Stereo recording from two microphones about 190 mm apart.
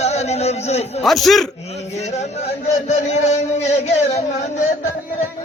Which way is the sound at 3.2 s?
35° left (ahead or behind).